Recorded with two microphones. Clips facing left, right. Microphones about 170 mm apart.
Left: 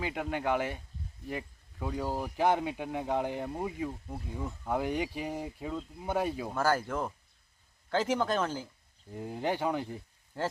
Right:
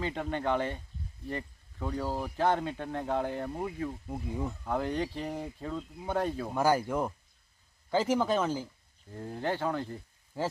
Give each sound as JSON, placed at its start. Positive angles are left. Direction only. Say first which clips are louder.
{"t": 0.0, "sound": "speech", "louder": "right 1 dB", "side_deg": 10}
{"t": 6.5, "sound": "speech", "louder": "right 4 dB", "side_deg": -15}
{"t": 9.1, "sound": "speech", "louder": "left 1 dB", "side_deg": 15}
{"t": 10.3, "sound": "speech", "louder": "right 1 dB", "side_deg": -5}